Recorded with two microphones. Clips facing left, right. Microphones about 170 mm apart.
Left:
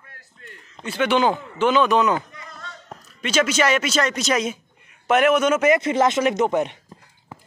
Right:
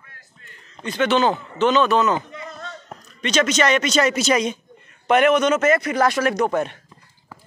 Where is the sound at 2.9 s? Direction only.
5° left (ahead or behind); by 6.8 s 20° left (ahead or behind).